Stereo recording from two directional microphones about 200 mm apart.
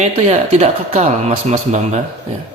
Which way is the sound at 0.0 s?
30° right (ahead or behind).